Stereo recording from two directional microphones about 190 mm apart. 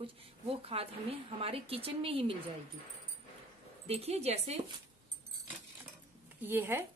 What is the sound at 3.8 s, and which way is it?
Speech, 30° right (ahead or behind).